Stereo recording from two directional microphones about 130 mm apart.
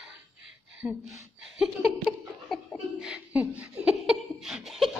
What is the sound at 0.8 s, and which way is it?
Speech, centre (ahead or behind).